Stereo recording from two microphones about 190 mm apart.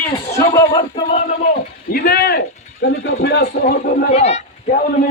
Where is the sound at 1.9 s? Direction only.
55° left (ahead or behind).